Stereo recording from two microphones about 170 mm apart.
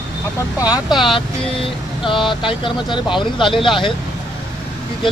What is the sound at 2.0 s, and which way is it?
Speech, 30° left (ahead or behind).